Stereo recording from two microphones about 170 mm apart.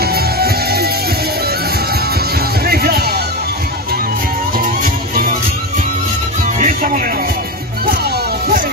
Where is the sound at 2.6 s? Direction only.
65° right (ahead or behind).